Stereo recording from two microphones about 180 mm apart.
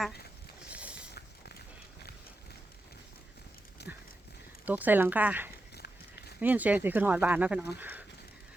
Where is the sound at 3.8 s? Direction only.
65° left (ahead or behind).